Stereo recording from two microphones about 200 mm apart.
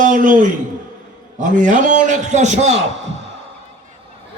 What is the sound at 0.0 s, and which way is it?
A man's voice, 40° right (ahead or behind).